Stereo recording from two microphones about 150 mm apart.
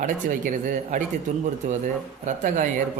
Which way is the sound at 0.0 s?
60° right (ahead or behind).